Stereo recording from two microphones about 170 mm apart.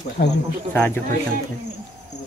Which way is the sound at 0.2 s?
65° left (ahead or behind).